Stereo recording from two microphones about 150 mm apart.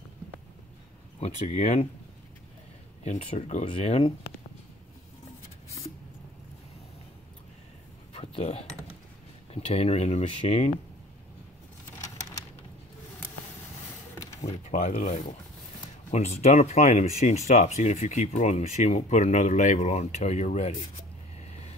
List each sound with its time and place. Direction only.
1.2 s speech: 45° left (ahead or behind)
3.0 s speech: 45° left (ahead or behind)
8.1 s dishes: 40° left (ahead or behind)
9.5 s speech: 45° left (ahead or behind)
14.4 s speech: 45° left (ahead or behind)
16.1 s speech: 45° left (ahead or behind)